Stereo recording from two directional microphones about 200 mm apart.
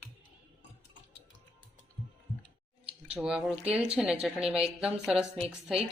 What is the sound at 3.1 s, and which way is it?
Speech, 5° right (ahead or behind).